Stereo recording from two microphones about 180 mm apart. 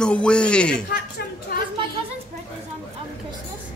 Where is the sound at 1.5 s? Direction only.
55° left (ahead or behind).